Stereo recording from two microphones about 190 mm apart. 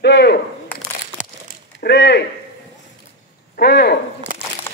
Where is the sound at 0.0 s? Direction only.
60° left (ahead or behind).